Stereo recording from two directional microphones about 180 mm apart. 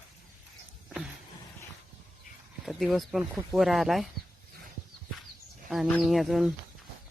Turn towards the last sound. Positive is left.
turn(degrees=0)  # may be behind; listen again after turning